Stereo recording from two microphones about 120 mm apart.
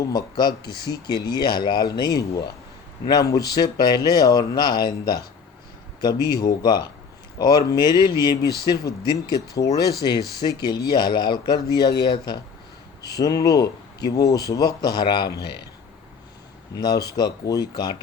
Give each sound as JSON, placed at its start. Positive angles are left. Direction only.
{"t": 0.0, "sound": "speech", "side_deg": 35}
{"t": 16.8, "sound": "speech", "side_deg": 30}